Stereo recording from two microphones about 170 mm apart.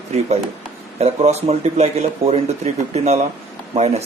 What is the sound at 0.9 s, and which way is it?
Speech, 40° right (ahead or behind).